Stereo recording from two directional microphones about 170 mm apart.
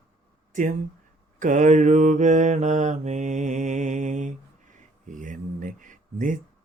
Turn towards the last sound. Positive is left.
turn(degrees=-50)  # may be behind; listen again after turning